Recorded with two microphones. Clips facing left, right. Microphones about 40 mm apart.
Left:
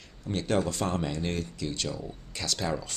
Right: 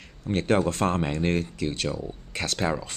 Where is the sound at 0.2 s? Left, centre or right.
Right.